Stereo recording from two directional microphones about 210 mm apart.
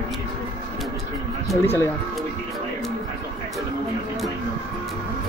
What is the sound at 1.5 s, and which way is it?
Speech, 10° left (ahead or behind).